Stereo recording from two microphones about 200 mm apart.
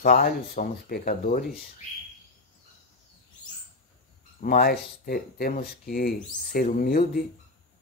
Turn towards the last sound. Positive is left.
turn(degrees=45)  # may be behind; listen again after turning